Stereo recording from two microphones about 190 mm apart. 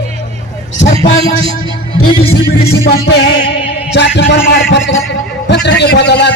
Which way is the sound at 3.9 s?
65° left (ahead or behind).